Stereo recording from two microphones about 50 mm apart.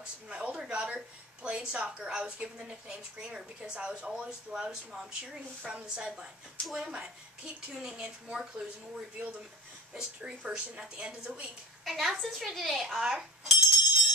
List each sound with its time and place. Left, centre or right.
0.0 s a sound: right
0.6 s a woman's voice: right
11.8 s a woman's voice: centre
12.9 s bicycle bell: centre